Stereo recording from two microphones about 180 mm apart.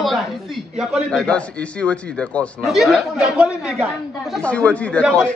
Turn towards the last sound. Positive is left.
turn(degrees=5)  # may be behind; listen again after turning